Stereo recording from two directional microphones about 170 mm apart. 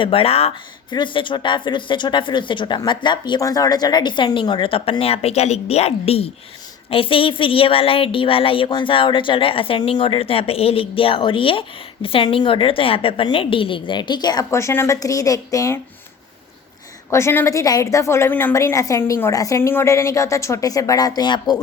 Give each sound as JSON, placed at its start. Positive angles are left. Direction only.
{"t": 0.0, "sound": "speech", "side_deg": 35}
{"t": 17.1, "sound": "a woman's voice", "side_deg": 15}